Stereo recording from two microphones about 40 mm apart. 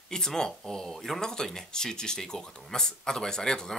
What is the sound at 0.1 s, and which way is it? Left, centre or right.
Speech, centre.